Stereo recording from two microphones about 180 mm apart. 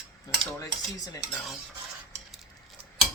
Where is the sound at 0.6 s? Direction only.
20° left (ahead or behind).